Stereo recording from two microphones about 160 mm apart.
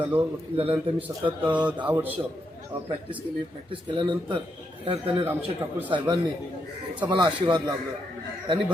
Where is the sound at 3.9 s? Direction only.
30° right (ahead or behind).